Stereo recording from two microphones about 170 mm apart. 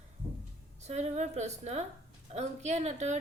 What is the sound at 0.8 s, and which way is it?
A woman's voice, 40° right (ahead or behind).